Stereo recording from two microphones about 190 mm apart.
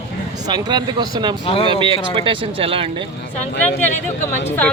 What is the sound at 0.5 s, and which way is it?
Speech, 25° right (ahead or behind).